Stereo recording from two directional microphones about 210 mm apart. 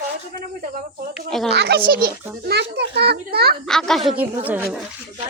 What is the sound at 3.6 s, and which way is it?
A woman's voice, centre (ahead or behind).